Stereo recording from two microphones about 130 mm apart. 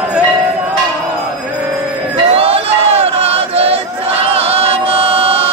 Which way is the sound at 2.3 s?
50° right (ahead or behind).